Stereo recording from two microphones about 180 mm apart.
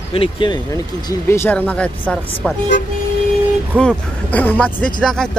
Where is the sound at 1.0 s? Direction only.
15° left (ahead or behind).